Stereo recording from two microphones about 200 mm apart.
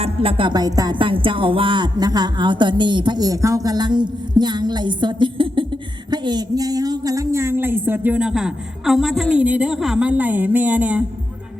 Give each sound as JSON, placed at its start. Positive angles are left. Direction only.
{"t": 0.0, "sound": "music", "side_deg": -25}
{"t": 6.1, "sound": "a woman's voice", "side_deg": -20}